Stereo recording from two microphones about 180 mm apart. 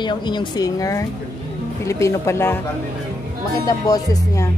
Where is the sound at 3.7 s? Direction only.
20° left (ahead or behind).